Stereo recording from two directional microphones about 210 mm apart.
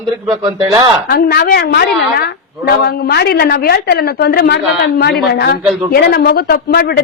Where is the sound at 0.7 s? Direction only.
20° right (ahead or behind).